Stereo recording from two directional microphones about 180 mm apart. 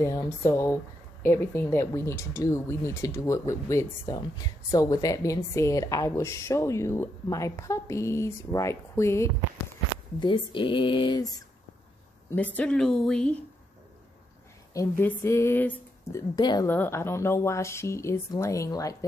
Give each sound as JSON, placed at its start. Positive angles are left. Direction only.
{"t": 0.0, "sound": "speech", "side_deg": 15}
{"t": 10.2, "sound": "speech", "side_deg": 25}
{"t": 12.5, "sound": "a woman's voice", "side_deg": 5}
{"t": 14.7, "sound": "speech", "side_deg": 15}
{"t": 16.6, "sound": "speech", "side_deg": 10}